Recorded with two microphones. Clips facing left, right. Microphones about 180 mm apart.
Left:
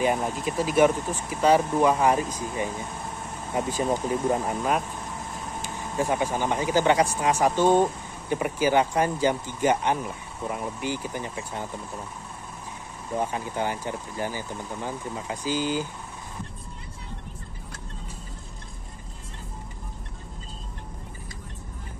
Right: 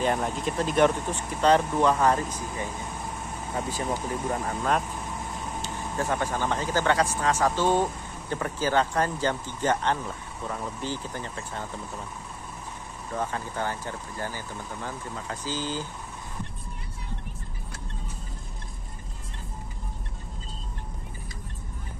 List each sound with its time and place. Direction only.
0.0 s speech: 5° left (ahead or behind)
5.6 s speech: 10° left (ahead or behind)
13.1 s speech: 15° left (ahead or behind)